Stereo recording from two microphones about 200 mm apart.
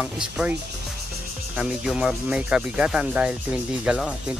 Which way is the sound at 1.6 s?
Centre (ahead or behind).